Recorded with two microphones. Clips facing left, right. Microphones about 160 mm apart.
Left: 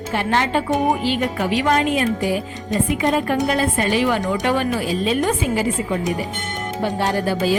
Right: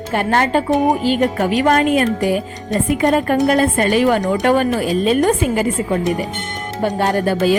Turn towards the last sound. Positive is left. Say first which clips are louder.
# right 4 dB
turn(degrees=-55)  # may be behind; listen again after turning